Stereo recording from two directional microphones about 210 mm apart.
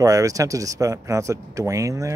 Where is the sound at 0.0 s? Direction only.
15° right (ahead or behind).